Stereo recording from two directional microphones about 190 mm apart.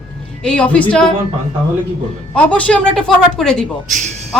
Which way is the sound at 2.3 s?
5° left (ahead or behind).